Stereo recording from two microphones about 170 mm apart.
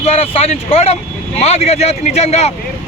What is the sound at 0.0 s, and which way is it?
Speech, 35° left (ahead or behind).